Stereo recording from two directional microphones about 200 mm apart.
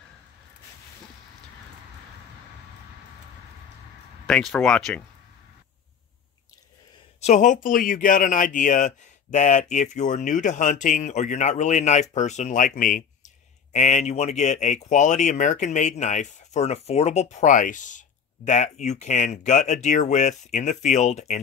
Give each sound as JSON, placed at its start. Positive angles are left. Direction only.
{"t": 4.3, "sound": "speech", "side_deg": 5}
{"t": 7.2, "sound": "speech", "side_deg": 35}